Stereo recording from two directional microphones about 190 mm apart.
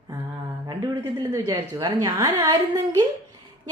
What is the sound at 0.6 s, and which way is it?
A man's voice, 20° right (ahead or behind).